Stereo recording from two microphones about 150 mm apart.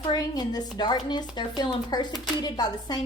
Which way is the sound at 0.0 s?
25° left (ahead or behind).